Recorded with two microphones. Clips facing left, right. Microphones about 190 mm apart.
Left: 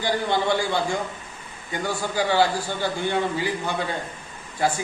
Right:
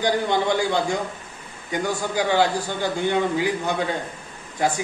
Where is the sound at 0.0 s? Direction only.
15° right (ahead or behind).